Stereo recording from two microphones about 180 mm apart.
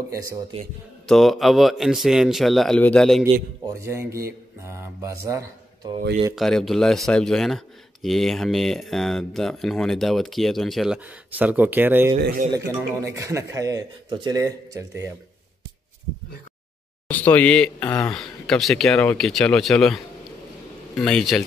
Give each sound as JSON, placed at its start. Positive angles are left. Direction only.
{"t": 0.1, "sound": "speech", "side_deg": -15}
{"t": 1.0, "sound": "speech", "side_deg": 0}
{"t": 3.6, "sound": "speech", "side_deg": -15}
{"t": 6.3, "sound": "speech", "side_deg": 0}
{"t": 12.2, "sound": "speech", "side_deg": -55}
{"t": 12.5, "sound": "speech", "side_deg": -15}
{"t": 17.1, "sound": "speech", "side_deg": 10}